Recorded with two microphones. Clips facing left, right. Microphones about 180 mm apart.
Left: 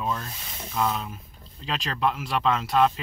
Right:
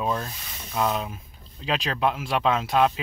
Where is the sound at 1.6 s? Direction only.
5° right (ahead or behind).